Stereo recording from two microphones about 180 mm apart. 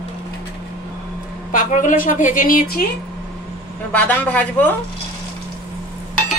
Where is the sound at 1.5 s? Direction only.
45° left (ahead or behind).